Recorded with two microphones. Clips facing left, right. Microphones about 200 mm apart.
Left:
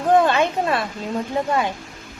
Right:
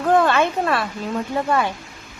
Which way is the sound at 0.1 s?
20° left (ahead or behind).